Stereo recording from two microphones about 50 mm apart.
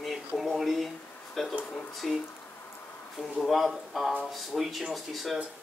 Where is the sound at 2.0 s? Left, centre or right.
Centre.